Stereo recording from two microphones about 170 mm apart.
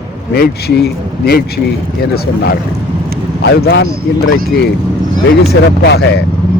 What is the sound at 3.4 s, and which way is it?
Speech, 80° left.